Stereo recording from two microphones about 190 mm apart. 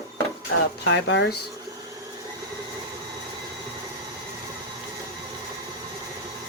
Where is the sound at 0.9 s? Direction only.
65° left (ahead or behind).